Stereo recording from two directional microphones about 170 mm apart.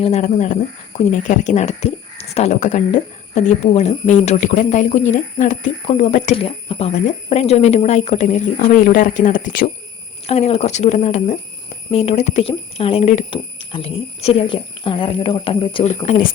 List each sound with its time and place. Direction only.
0.0 s speech: 40° left (ahead or behind)
6.3 s speech: 35° left (ahead or behind); by 9.6 s 50° left (ahead or behind)
10.2 s speech: 40° left (ahead or behind)
15.9 s speech: 45° left (ahead or behind)